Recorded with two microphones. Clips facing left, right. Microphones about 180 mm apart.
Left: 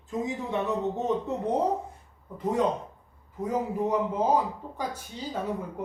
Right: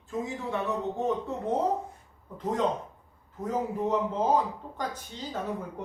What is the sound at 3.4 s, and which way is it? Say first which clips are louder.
Speech: left 2 dB; 10° left (ahead or behind).